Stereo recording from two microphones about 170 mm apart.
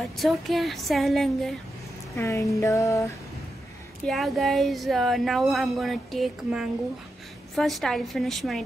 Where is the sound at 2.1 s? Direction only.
15° left (ahead or behind).